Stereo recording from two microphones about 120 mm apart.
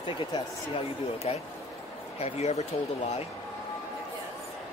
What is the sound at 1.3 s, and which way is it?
Speech, 55° left (ahead or behind).